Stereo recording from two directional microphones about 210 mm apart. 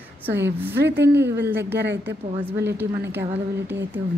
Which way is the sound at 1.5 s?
10° right (ahead or behind).